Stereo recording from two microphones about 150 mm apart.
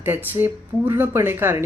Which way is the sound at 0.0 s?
15° right (ahead or behind).